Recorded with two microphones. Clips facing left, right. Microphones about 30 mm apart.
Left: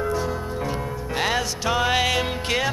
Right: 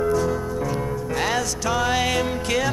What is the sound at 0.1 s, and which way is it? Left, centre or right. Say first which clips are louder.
Music: right 4 dB; left.